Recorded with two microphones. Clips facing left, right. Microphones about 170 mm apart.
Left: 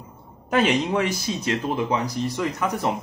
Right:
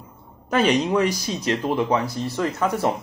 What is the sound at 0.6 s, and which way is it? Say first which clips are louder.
Speech: right 2 dB; 40° right (ahead or behind).